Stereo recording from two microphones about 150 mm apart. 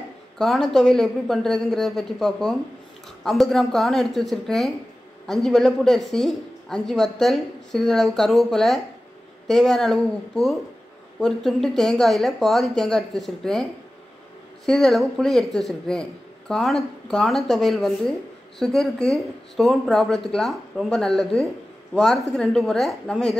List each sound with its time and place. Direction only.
0.4 s speech: centre (ahead or behind)
14.7 s speech: centre (ahead or behind)